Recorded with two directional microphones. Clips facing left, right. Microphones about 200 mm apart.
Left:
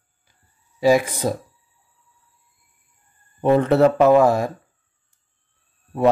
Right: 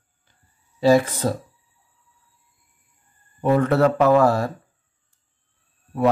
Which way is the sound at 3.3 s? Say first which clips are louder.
Left 2 dB; 25° left (ahead or behind).